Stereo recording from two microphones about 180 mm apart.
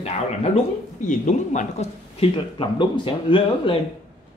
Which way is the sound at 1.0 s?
45° left (ahead or behind).